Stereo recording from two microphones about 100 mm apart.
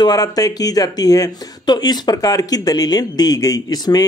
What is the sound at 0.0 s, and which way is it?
Speech, 40° left (ahead or behind).